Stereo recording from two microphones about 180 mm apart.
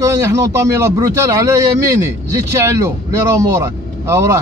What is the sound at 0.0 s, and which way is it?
Speech, 15° right (ahead or behind).